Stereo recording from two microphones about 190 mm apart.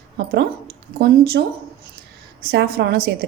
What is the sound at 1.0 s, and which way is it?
Speech, 55° right (ahead or behind).